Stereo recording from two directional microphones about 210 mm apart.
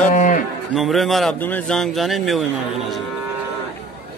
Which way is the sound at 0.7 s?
Centre (ahead or behind).